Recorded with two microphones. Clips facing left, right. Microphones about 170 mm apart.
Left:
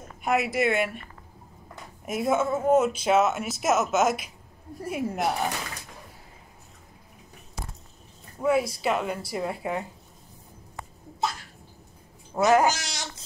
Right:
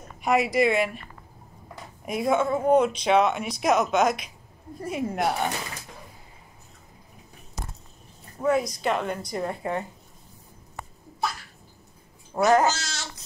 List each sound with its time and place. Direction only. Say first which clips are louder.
0.2 s speech: right 3 dB; centre (ahead or behind)
2.0 s speech: right 1 dB; 5° left (ahead or behind)
8.4 s speech: even; 5° left (ahead or behind)
12.4 s speech: even; 10° left (ahead or behind)